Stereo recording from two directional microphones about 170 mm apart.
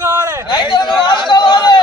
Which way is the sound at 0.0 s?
20° right (ahead or behind).